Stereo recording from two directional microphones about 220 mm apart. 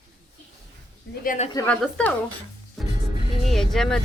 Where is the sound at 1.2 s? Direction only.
30° left (ahead or behind).